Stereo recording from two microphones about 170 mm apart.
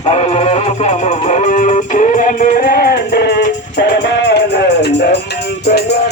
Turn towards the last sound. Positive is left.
turn(degrees=75)  # may be behind; listen again after turning